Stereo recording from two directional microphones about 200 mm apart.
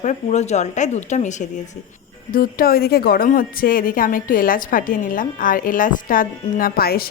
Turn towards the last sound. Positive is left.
turn(degrees=50)  # may be behind; listen again after turning